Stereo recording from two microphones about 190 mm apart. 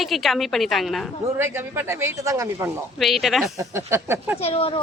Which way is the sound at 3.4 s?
15° right (ahead or behind).